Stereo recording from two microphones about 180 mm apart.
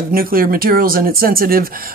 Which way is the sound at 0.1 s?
55° right (ahead or behind).